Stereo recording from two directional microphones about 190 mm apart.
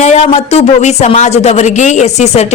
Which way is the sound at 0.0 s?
35° left (ahead or behind).